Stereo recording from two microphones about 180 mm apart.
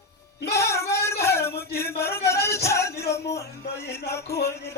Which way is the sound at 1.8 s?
15° left (ahead or behind).